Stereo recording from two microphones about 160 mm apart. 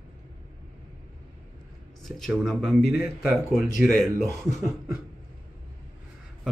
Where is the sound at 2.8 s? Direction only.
90° left.